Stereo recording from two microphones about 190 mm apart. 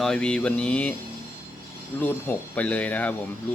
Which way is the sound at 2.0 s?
10° left (ahead or behind).